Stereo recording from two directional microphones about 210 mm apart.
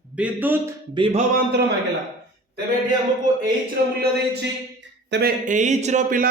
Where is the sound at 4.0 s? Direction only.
50° right (ahead or behind).